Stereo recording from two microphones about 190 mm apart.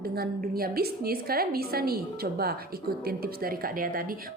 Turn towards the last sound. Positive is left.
turn(degrees=-50)  # may be behind; listen again after turning